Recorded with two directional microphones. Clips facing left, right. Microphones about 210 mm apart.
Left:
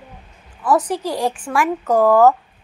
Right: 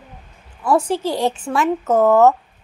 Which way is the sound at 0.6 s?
25° right (ahead or behind).